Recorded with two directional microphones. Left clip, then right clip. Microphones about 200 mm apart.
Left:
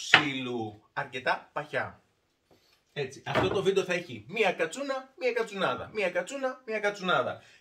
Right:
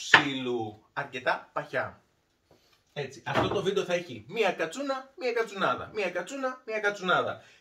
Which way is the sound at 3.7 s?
25° left (ahead or behind).